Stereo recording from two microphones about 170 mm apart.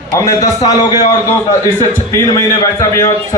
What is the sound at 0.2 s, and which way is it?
Speech, 20° left (ahead or behind).